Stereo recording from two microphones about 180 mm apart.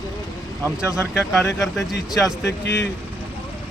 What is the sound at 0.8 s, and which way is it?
Speech, 15° left (ahead or behind).